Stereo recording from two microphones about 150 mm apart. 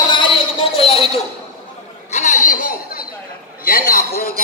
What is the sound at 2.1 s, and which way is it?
Chatter, 55° left (ahead or behind).